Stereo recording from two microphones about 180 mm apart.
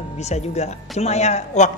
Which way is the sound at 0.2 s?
40° left (ahead or behind).